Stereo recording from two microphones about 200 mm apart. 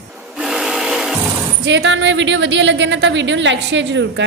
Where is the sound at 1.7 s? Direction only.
60° right (ahead or behind).